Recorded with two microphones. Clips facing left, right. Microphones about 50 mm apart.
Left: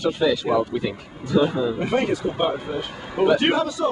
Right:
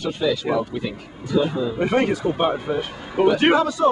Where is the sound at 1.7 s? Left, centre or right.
Centre.